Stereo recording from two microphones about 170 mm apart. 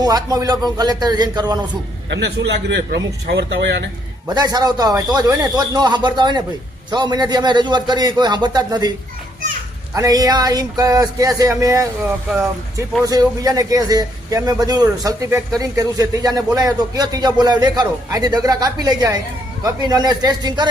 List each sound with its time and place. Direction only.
0.0 s a man's voice: 20° right (ahead or behind)
2.0 s speech: 90° right
4.4 s a man's voice: 25° right (ahead or behind)
9.9 s a man's voice: 20° right (ahead or behind)
13.1 s a man's voice: 20° right (ahead or behind)